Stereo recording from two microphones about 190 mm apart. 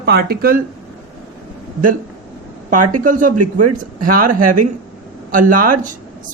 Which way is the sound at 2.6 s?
45° right (ahead or behind).